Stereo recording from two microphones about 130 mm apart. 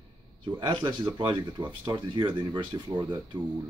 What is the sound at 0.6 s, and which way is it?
Speech, 35° right (ahead or behind).